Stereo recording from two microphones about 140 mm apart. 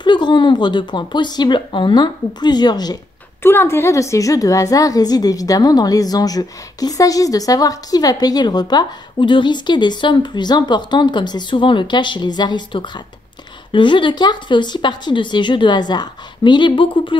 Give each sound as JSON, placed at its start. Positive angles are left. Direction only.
{"t": 0.0, "sound": "a woman's voice", "side_deg": 35}
{"t": 3.4, "sound": "a woman's voice", "side_deg": 15}